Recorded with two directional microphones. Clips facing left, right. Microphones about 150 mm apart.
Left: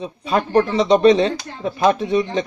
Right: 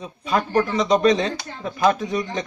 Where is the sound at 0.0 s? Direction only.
30° left (ahead or behind).